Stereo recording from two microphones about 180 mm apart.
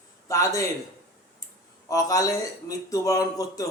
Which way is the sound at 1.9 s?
20° left (ahead or behind).